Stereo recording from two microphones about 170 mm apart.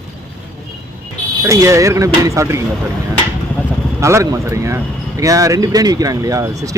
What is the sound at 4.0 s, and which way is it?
Speech, 15° right (ahead or behind).